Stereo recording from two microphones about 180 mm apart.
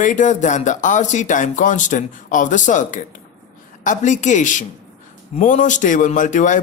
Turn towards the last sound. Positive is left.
turn(degrees=45)  # may be behind; listen again after turning